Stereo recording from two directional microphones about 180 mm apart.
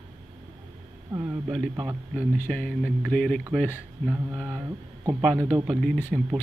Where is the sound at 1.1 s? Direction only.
10° right (ahead or behind).